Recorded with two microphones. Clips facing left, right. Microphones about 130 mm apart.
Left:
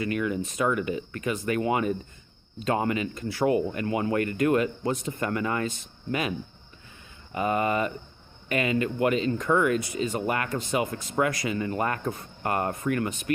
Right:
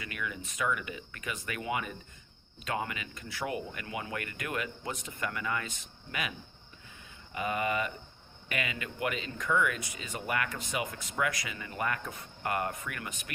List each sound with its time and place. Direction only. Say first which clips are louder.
0.0 s speech: left 12 dB; 35° left (ahead or behind)
7.3 s speech: left 6 dB; 35° left (ahead or behind)